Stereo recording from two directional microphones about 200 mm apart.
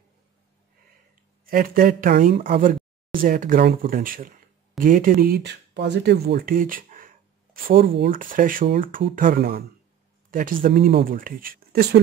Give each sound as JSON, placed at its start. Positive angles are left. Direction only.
{"t": 1.4, "sound": "speech", "side_deg": -45}